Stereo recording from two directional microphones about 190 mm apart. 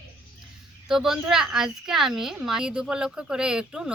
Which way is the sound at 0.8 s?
Centre (ahead or behind).